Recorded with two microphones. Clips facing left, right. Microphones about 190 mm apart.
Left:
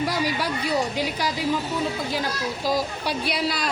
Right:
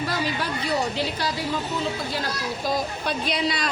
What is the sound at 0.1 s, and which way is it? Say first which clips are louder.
Speech: left 2 dB; 10° left (ahead or behind).